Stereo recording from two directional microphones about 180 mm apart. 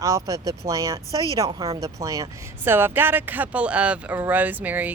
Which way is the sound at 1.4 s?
20° right (ahead or behind).